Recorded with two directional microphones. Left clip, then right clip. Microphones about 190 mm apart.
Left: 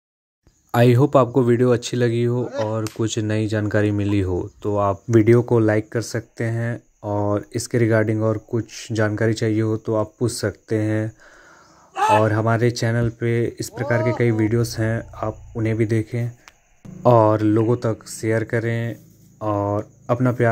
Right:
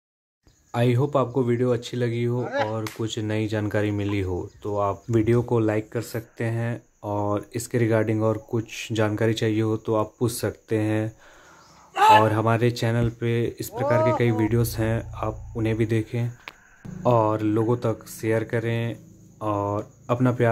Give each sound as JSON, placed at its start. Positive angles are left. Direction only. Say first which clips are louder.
{"t": 0.7, "sound": "speech", "louder": "left 7 dB", "side_deg": 35}
{"t": 2.4, "sound": "speech", "louder": "left 1 dB", "side_deg": 65}
{"t": 3.0, "sound": "speech", "louder": "left 5 dB", "side_deg": 25}
{"t": 11.9, "sound": "a sound", "louder": "right 2 dB", "side_deg": -10}
{"t": 12.2, "sound": "speech", "louder": "left 2 dB", "side_deg": 15}